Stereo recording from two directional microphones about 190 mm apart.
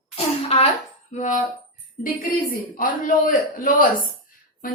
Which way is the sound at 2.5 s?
45° left (ahead or behind).